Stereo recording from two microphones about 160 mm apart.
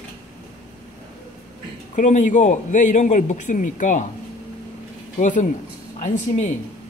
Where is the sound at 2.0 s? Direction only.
50° left (ahead or behind).